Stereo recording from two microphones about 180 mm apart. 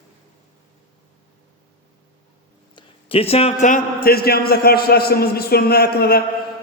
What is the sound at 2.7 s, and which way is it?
A man's voice, 30° left (ahead or behind).